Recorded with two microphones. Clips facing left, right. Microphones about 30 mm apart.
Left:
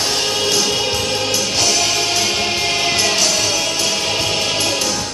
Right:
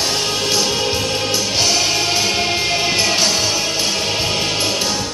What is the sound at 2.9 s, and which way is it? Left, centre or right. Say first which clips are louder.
Music: even; centre.